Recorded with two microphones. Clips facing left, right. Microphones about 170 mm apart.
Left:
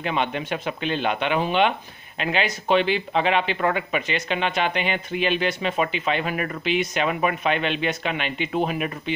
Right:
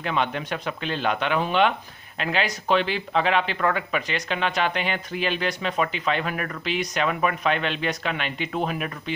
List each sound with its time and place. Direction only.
0.0 s speech: 5° left (ahead or behind)